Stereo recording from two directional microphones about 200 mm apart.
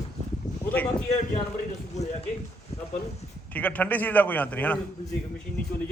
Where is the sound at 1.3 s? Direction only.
35° left (ahead or behind).